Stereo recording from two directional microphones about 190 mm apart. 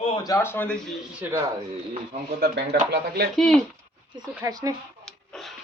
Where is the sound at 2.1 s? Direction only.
50° right (ahead or behind).